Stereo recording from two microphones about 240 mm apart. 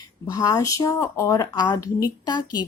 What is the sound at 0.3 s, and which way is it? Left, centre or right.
A woman's voice, centre.